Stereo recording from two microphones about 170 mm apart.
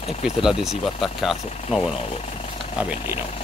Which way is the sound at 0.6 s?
35° left (ahead or behind).